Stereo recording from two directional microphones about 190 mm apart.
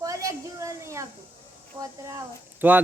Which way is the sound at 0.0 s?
15° right (ahead or behind).